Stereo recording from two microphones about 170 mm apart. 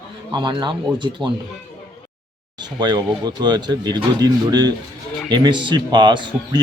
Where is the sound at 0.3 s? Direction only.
25° right (ahead or behind).